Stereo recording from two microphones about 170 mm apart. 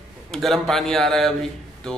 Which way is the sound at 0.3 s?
Centre (ahead or behind).